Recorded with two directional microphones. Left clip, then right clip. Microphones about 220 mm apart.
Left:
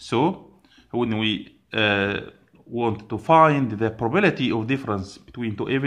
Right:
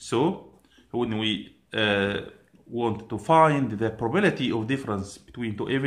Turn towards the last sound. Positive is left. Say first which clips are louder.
# left 3 dB
turn(degrees=25)  # may be behind; listen again after turning